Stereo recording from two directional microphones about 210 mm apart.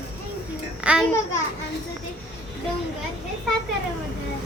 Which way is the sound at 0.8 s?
5° right (ahead or behind).